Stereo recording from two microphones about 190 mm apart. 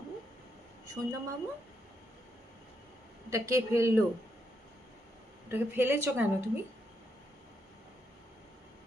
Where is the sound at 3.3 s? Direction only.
15° right (ahead or behind).